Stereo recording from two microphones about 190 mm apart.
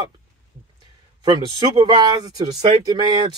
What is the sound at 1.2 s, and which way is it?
Speech, 25° right (ahead or behind).